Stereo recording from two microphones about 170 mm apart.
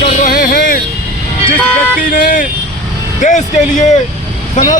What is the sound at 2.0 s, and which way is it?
Vehicle, 55° left (ahead or behind).